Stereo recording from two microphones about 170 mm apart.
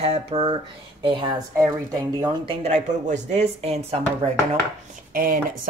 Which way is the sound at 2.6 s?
45° right (ahead or behind).